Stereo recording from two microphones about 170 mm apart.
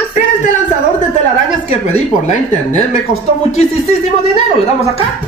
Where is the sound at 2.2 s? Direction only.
45° left (ahead or behind).